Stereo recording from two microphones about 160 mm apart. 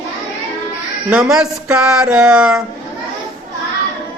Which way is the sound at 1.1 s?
5° right (ahead or behind).